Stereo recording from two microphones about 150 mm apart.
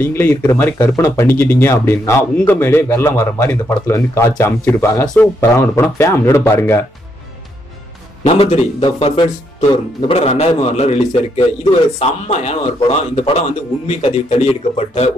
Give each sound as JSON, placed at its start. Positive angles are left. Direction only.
{"t": 0.0, "sound": "speech", "side_deg": 15}
{"t": 5.0, "sound": "speech", "side_deg": 5}
{"t": 5.4, "sound": "speech", "side_deg": 15}
{"t": 8.2, "sound": "speech", "side_deg": 40}